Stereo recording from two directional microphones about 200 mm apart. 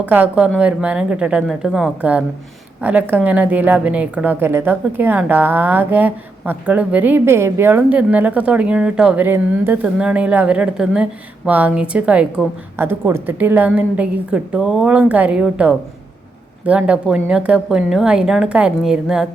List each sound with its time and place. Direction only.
0.0 s a woman's voice: 10° right (ahead or behind)